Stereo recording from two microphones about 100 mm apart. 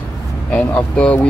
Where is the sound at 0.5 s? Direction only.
15° left (ahead or behind).